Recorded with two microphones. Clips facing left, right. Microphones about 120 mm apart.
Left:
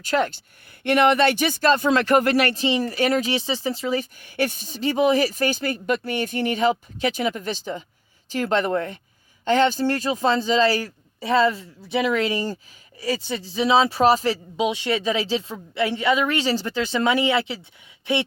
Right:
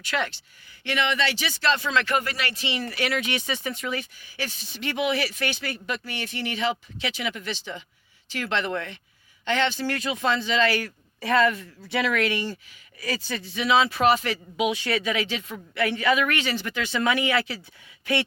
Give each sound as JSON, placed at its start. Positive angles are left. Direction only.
{"t": 0.0, "sound": "speech", "side_deg": 40}
{"t": 2.6, "sound": "speech", "side_deg": 35}
{"t": 4.2, "sound": "speech", "side_deg": 55}